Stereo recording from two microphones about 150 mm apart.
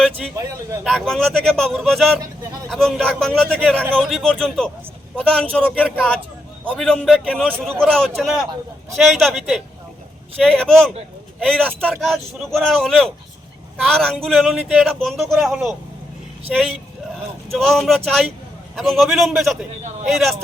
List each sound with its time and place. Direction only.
0.3 s a man's voice: 20° right (ahead or behind)
0.9 s speech: centre (ahead or behind)